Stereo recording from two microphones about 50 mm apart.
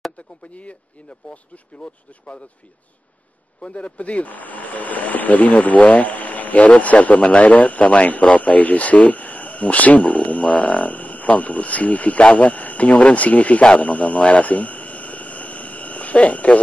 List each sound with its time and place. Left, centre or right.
1.3 s speech: left
3.6 s speech: left